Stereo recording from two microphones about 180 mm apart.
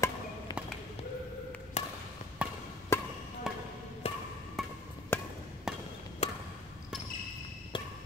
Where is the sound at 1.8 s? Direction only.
35° left (ahead or behind).